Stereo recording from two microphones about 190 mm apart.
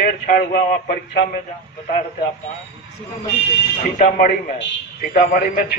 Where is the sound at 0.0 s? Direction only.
50° left (ahead or behind).